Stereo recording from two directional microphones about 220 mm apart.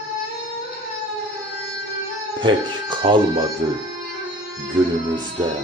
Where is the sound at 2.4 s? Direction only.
20° right (ahead or behind).